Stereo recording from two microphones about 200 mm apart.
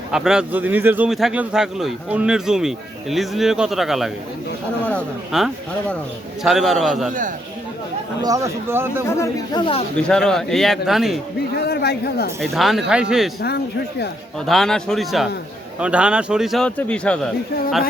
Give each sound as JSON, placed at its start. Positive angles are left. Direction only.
{"t": 0.1, "sound": "speech", "side_deg": -5}
{"t": 7.1, "sound": "speech", "side_deg": -40}
{"t": 8.2, "sound": "speech", "side_deg": -15}
{"t": 9.0, "sound": "speech", "side_deg": 15}
{"t": 10.0, "sound": "speech", "side_deg": 5}
{"t": 11.5, "sound": "speech", "side_deg": 55}
{"t": 12.4, "sound": "speech", "side_deg": 0}
{"t": 14.4, "sound": "speech", "side_deg": 0}